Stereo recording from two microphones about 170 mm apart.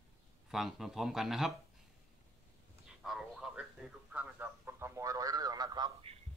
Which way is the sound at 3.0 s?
Centre (ahead or behind).